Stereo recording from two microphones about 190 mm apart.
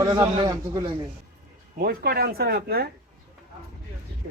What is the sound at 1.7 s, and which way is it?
Speech, 50° right (ahead or behind).